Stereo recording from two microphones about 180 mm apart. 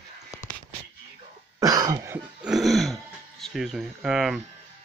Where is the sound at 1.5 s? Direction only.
20° right (ahead or behind).